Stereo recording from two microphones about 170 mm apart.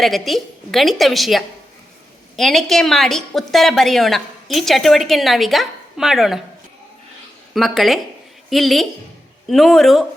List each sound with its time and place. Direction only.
0.0 s a woman's voice: centre (ahead or behind)
7.5 s a woman's voice: centre (ahead or behind)